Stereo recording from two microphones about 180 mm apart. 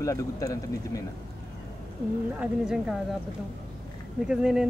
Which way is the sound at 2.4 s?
5° right (ahead or behind).